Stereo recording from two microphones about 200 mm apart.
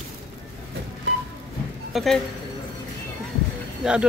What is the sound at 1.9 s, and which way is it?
Speech, centre (ahead or behind).